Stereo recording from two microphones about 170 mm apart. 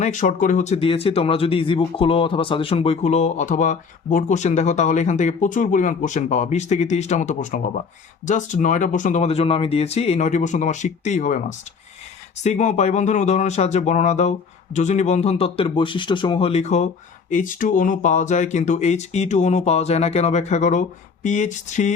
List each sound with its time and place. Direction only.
0.0 s speech: 45° left (ahead or behind)
12.4 s speech: 45° left (ahead or behind)